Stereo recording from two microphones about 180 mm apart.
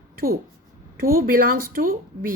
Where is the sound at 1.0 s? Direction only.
55° right (ahead or behind).